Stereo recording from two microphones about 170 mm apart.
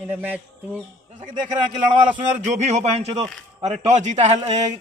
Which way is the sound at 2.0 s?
45° right (ahead or behind).